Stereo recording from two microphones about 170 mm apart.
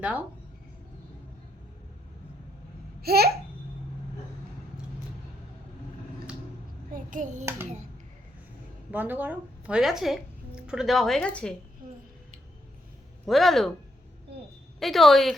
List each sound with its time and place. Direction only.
0.0 s speech: 10° right (ahead or behind)
3.0 s babbling: 65° right (ahead or behind)
6.9 s hands: 50° right (ahead or behind)
8.9 s speech: 10° right (ahead or behind); by 11.5 s 5° left (ahead or behind)
13.2 s a woman's voice: centre (ahead or behind)
14.8 s a woman's voice: centre (ahead or behind)